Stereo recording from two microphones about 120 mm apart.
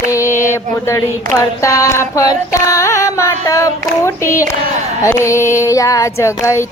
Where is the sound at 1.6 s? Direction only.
25° left (ahead or behind).